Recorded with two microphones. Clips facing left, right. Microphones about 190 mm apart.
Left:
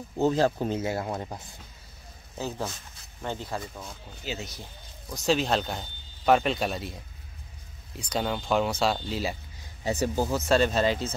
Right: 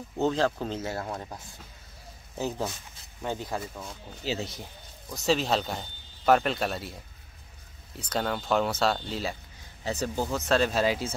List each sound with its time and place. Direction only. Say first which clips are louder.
0.2 s speech: left 2 dB; 10° left (ahead or behind)
3.2 s speech: right 1 dB; 15° right (ahead or behind)
3.4 s speech: right 1 dB; centre (ahead or behind)
4.2 s speech: right 4 dB; 35° right (ahead or behind)
5.1 s speech: left 1 dB; centre (ahead or behind)
8.0 s speech: left 1 dB; centre (ahead or behind)
10.4 s speech: left 1 dB; centre (ahead or behind)